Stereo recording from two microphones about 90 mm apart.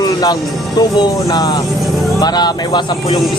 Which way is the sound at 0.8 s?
50° left (ahead or behind).